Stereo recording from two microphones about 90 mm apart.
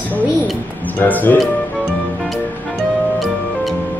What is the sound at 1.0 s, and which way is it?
Speech, 20° left (ahead or behind).